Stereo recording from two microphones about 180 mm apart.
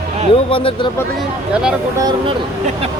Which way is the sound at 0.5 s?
30° left (ahead or behind).